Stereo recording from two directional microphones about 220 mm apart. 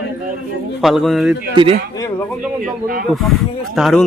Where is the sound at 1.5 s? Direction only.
25° right (ahead or behind).